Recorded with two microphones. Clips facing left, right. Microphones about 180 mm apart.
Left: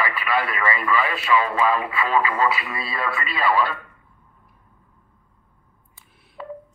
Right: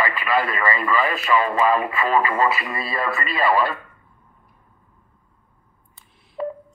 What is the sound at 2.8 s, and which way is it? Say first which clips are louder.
Speech: right 2 dB; 45° right (ahead or behind).